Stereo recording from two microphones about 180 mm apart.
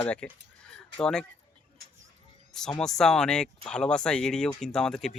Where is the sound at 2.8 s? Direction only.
Centre (ahead or behind).